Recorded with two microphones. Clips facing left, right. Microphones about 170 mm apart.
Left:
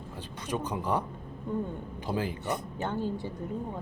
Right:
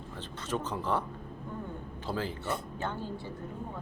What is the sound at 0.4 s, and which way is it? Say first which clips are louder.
Speech: left 1 dB; 15° left (ahead or behind).